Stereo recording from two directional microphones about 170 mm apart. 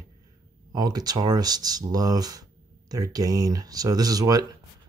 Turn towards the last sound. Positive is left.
turn(degrees=-20)  # may be behind; listen again after turning